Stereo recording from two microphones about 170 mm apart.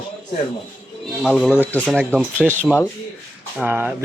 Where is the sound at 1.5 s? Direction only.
10° left (ahead or behind).